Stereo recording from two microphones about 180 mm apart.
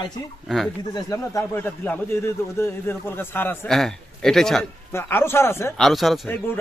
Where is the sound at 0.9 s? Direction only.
20° left (ahead or behind); by 4.6 s centre (ahead or behind).